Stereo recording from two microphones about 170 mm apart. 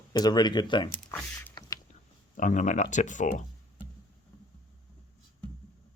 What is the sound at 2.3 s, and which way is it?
Speech, 50° left (ahead or behind).